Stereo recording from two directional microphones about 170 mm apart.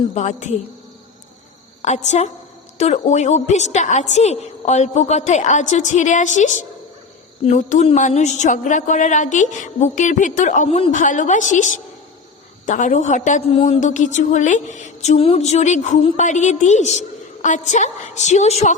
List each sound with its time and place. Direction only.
0.1 s a woman's voice: 45° left (ahead or behind)
1.8 s a woman's voice: 45° left (ahead or behind)
11.0 s a woman's voice: 50° left (ahead or behind)